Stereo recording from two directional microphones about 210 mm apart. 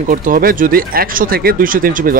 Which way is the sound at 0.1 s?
40° right (ahead or behind).